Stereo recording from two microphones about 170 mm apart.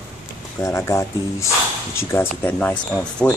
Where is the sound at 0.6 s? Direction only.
15° left (ahead or behind).